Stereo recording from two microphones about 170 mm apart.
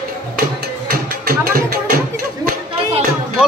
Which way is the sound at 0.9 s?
60° right (ahead or behind).